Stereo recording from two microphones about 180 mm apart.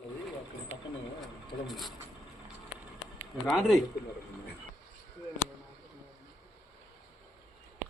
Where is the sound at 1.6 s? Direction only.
Centre (ahead or behind).